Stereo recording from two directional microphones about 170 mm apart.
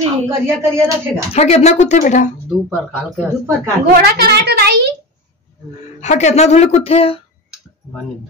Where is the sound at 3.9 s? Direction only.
65° right (ahead or behind).